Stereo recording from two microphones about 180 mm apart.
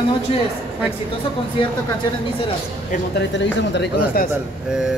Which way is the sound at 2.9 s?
70° left (ahead or behind).